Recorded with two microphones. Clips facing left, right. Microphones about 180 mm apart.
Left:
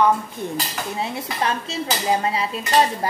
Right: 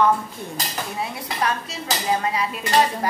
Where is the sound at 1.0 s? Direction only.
25° left (ahead or behind).